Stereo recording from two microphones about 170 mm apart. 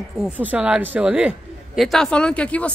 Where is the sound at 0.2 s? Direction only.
10° right (ahead or behind).